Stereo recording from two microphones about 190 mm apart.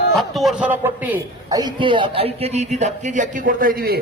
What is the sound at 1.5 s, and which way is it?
A man's voice, 25° right (ahead or behind).